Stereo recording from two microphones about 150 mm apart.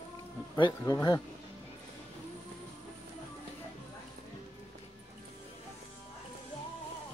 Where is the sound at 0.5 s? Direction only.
30° left (ahead or behind).